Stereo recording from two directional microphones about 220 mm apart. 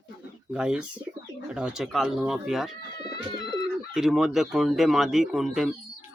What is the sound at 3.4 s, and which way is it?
Pigeon, 20° left (ahead or behind).